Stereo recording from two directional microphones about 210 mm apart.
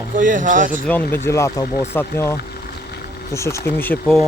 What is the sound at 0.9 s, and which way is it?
Speech, 10° left (ahead or behind).